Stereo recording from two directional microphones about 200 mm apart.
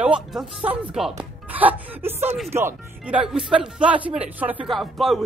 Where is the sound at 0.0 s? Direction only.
5° right (ahead or behind).